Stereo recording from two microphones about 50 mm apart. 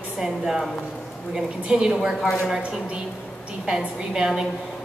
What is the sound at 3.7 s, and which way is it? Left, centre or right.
Speech, centre.